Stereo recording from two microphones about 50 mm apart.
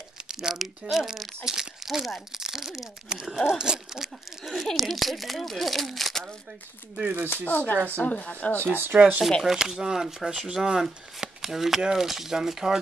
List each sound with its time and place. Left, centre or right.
0.3 s speech: centre
4.5 s a child's voice: centre
7.4 s speech: left
8.7 s speech: right
9.4 s speech: centre